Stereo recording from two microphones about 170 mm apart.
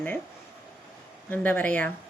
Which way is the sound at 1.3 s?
10° left (ahead or behind).